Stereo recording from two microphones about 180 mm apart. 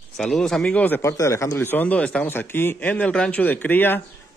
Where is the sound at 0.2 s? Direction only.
Centre (ahead or behind).